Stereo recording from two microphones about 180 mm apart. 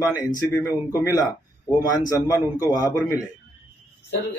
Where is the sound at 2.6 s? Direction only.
20° left (ahead or behind).